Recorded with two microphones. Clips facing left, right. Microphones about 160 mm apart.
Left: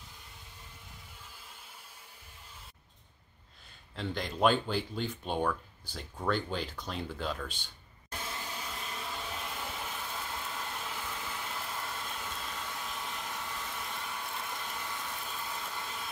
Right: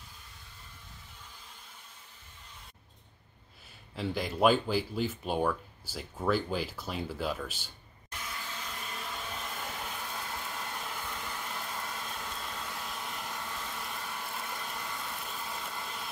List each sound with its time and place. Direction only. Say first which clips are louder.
3.9 s speech: right 3 dB; 5° right (ahead or behind)
8.1 s a sound: left 2 dB; 25° left (ahead or behind)
8.5 s vehicle: left 1 dB; 10° left (ahead or behind)